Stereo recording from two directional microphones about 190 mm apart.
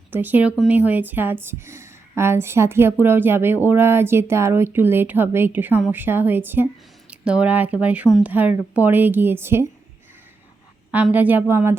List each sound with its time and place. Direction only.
0.1 s a woman's voice: 10° right (ahead or behind)
10.9 s a woman's voice: 10° right (ahead or behind)